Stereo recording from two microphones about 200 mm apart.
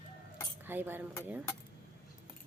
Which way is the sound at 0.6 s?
10° right (ahead or behind).